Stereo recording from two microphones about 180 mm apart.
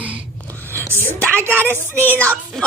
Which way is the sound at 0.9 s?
15° right (ahead or behind).